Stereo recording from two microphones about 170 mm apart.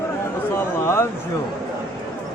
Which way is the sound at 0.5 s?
15° left (ahead or behind).